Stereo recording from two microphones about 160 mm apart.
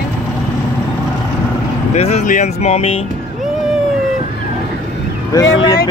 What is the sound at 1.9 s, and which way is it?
Speech, 45° left (ahead or behind).